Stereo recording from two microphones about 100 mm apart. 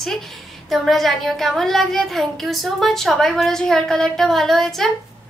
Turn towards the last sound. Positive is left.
turn(degrees=5)  # may be behind; listen again after turning